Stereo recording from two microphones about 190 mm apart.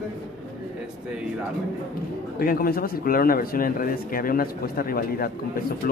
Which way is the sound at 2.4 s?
50° left (ahead or behind).